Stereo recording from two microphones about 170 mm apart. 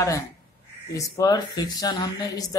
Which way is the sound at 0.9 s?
20° left (ahead or behind).